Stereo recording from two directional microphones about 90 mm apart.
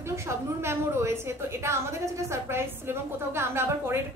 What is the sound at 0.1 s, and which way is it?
A woman's voice, 30° right (ahead or behind).